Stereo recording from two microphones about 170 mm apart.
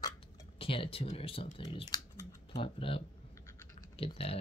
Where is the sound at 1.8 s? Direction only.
20° left (ahead or behind).